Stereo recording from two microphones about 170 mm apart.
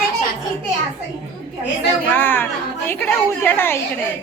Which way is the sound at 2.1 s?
10° left (ahead or behind).